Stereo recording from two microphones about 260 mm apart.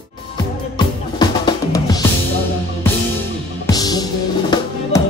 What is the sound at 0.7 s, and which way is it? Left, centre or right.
Music, centre.